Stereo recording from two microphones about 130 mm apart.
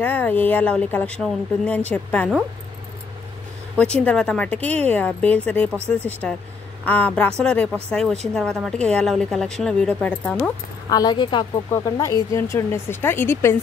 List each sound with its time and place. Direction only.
0.0 s a woman's voice: 15° left (ahead or behind)
3.7 s a woman's voice: 10° left (ahead or behind)
10.9 s speech: 30° left (ahead or behind)
11.7 s speech: 25° left (ahead or behind)